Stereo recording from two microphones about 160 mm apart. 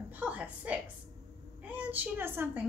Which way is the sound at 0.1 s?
10° right (ahead or behind).